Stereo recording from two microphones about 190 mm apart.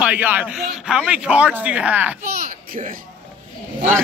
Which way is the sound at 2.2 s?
50° right (ahead or behind).